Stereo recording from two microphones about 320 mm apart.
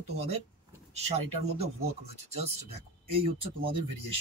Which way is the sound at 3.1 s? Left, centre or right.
Centre.